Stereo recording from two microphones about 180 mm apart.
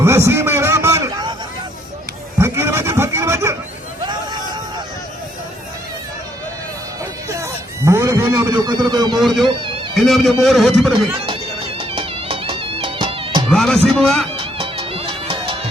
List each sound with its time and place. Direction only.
0.0 s a sound: 15° right (ahead or behind)
2.4 s goat: 15° right (ahead or behind)
4.0 s hubbub: 25° right (ahead or behind)
7.3 s a sound: 15° right (ahead or behind)
9.1 s a man's voice: centre (ahead or behind)
11.8 s music: 30° right (ahead or behind)
13.5 s a man's voice: 5° left (ahead or behind)
14.3 s music: 30° right (ahead or behind)